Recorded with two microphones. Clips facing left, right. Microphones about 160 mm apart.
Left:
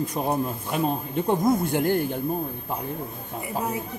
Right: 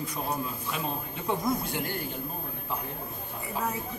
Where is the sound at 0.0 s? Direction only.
50° left (ahead or behind).